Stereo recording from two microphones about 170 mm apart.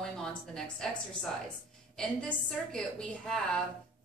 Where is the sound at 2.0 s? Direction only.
5° left (ahead or behind).